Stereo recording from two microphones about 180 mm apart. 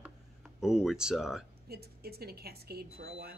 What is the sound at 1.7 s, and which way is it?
A woman's voice, 60° right (ahead or behind).